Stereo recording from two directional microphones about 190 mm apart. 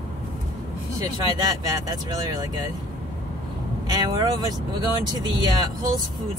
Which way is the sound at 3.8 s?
20° right (ahead or behind).